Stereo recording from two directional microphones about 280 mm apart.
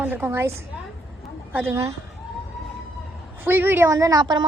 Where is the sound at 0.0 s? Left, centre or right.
Centre.